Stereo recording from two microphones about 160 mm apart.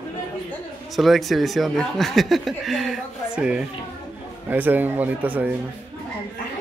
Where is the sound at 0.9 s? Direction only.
Centre (ahead or behind).